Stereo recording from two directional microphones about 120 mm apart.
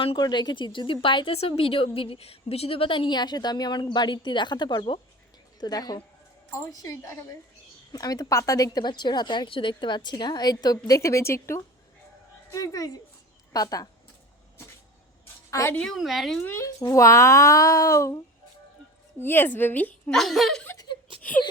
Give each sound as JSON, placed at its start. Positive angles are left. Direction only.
{"t": 0.2, "sound": "a woman's voice", "side_deg": 35}
{"t": 15.4, "sound": "a sound", "side_deg": 25}
{"t": 15.7, "sound": "a woman's voice", "side_deg": 10}
{"t": 16.0, "sound": "speech", "side_deg": 0}
{"t": 16.8, "sound": "speech", "side_deg": 25}
{"t": 19.2, "sound": "a woman's voice", "side_deg": 15}
{"t": 20.7, "sound": "a sound", "side_deg": 40}
{"t": 21.4, "sound": "a woman's voice", "side_deg": 40}